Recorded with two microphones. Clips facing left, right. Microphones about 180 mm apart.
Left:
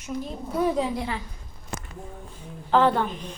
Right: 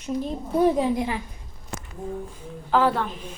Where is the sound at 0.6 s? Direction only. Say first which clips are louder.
Right 4 dB; 20° right (ahead or behind).